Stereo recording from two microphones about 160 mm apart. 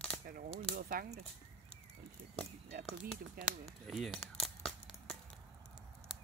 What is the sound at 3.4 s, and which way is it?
Speech, 65° right (ahead or behind).